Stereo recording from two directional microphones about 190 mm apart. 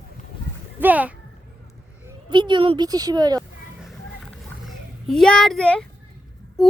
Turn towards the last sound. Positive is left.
turn(degrees=0)  # may be behind; listen again after turning